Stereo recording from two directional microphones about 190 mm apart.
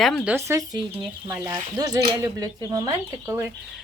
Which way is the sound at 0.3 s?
15° right (ahead or behind).